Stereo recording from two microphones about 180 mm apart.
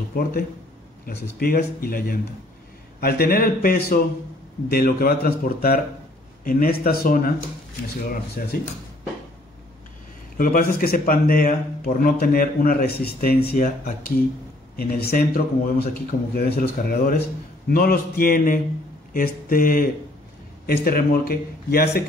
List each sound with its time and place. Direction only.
0.1 s a man's voice: 55° left (ahead or behind)
8.4 s a man's voice: 55° left (ahead or behind)
10.3 s a man's voice: 50° left (ahead or behind)